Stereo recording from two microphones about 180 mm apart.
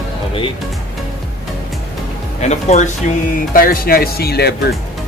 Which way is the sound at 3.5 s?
55° left (ahead or behind).